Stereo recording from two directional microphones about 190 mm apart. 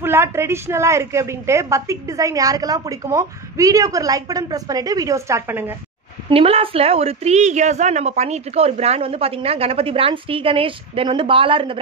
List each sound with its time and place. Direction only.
0.0 s a woman's voice: 15° right (ahead or behind)
6.3 s a woman's voice: 30° right (ahead or behind)